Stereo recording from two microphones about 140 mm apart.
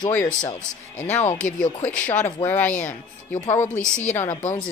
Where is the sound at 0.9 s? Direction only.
55° left (ahead or behind).